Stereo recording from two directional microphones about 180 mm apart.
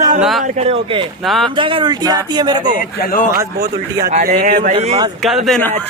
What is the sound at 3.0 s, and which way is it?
Speech, 50° left (ahead or behind).